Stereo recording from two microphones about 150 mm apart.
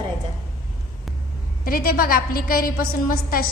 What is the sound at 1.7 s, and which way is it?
A woman's voice, 75° left (ahead or behind).